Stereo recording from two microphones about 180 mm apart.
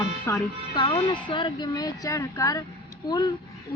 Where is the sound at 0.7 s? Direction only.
25° left (ahead or behind).